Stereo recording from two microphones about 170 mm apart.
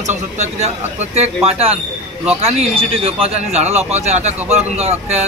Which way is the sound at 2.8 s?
35° right (ahead or behind).